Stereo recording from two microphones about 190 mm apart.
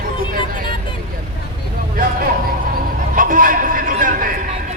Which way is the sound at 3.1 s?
45° right (ahead or behind).